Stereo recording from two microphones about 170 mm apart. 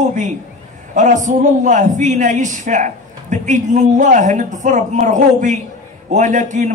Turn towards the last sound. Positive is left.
turn(degrees=-45)  # may be behind; listen again after turning